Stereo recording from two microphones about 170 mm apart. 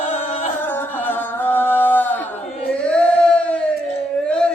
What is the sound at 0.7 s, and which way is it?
Singing, 10° left (ahead or behind).